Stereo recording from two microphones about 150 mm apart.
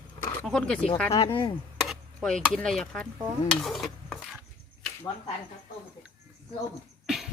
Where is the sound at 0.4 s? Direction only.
5° left (ahead or behind).